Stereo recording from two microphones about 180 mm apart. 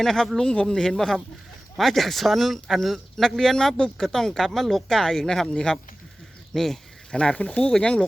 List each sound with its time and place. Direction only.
0.0 s speech: centre (ahead or behind)